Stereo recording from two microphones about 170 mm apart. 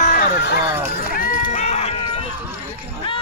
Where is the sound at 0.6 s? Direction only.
15° right (ahead or behind).